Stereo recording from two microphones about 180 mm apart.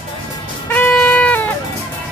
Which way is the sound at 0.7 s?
10° left (ahead or behind).